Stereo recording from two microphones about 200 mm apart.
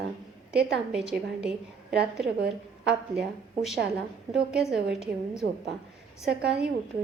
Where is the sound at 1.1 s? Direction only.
5° right (ahead or behind).